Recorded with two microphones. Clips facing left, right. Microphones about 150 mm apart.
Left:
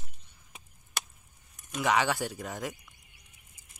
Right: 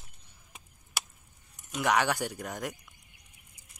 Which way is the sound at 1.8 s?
Centre (ahead or behind).